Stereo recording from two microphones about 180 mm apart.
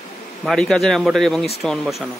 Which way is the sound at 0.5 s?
Centre (ahead or behind).